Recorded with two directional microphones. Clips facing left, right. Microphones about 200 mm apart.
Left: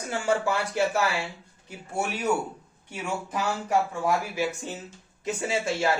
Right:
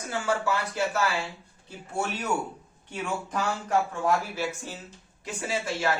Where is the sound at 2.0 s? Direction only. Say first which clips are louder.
Left 2 dB; 10° left (ahead or behind).